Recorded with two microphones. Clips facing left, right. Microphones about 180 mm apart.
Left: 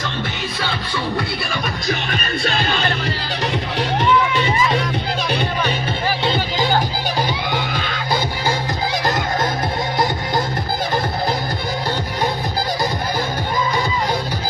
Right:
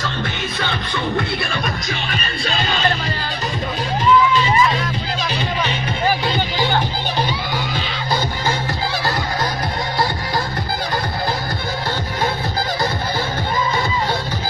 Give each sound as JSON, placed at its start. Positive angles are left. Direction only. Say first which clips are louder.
{"t": 2.0, "sound": "music", "louder": "left 2 dB", "side_deg": 55}
{"t": 4.0, "sound": "music", "louder": "right 3 dB", "side_deg": 65}
{"t": 6.2, "sound": "music", "louder": "left 1 dB", "side_deg": 30}